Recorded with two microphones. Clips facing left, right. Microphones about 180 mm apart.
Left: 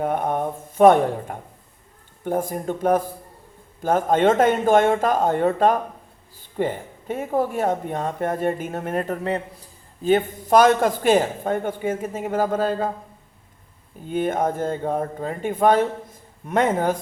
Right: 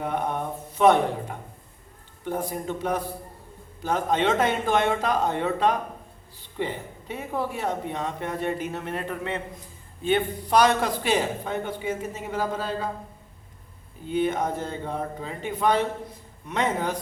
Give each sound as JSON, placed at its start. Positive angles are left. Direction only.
{"t": 0.0, "sound": "speech", "side_deg": 50}
{"t": 14.1, "sound": "speech", "side_deg": 50}